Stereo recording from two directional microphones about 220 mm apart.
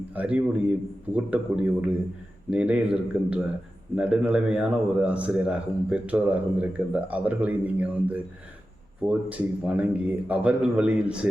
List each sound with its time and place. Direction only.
0.1 s a man's voice: 5° right (ahead or behind)